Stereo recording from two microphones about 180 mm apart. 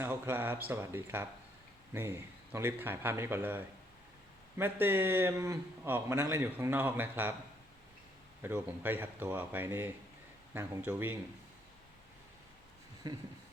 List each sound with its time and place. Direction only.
0.0 s a man's voice: 10° right (ahead or behind)
8.4 s a man's voice: 10° right (ahead or behind)
13.0 s speech: 20° right (ahead or behind)